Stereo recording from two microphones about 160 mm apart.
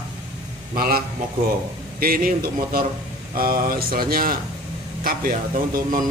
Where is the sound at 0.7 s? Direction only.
70° right (ahead or behind).